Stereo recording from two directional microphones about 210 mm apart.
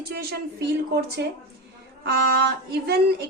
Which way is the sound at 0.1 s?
50° right (ahead or behind).